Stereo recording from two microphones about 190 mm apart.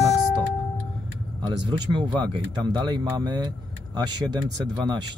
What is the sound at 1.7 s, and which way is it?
Speech, 25° right (ahead or behind).